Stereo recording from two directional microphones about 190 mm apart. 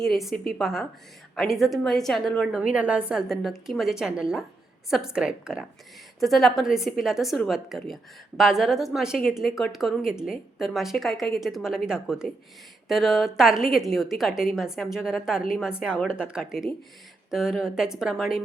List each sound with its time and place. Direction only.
0.0 s a woman's voice: centre (ahead or behind)